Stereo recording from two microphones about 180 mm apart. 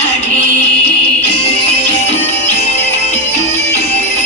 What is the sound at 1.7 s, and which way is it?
Music, 40° left (ahead or behind).